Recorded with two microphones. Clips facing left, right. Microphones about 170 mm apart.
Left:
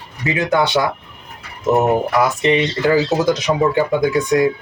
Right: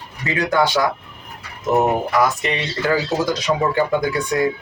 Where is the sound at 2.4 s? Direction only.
20° left (ahead or behind).